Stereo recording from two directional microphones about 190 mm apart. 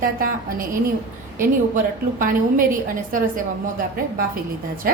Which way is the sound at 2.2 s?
45° right (ahead or behind).